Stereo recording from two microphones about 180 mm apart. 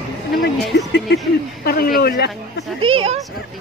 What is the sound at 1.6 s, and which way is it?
Speech, 55° left (ahead or behind).